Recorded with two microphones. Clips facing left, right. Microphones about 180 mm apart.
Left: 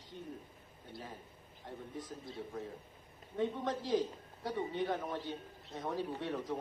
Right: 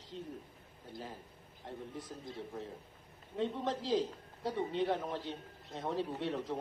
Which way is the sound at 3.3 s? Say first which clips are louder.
Even; 25° right (ahead or behind).